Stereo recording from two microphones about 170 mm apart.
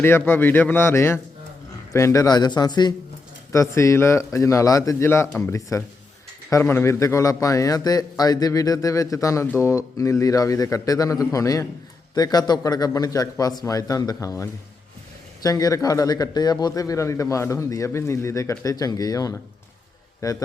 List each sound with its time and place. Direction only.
0.0 s a man's voice: 15° left (ahead or behind)